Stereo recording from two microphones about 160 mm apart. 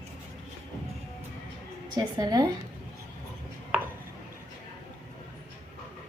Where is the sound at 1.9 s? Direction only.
25° right (ahead or behind).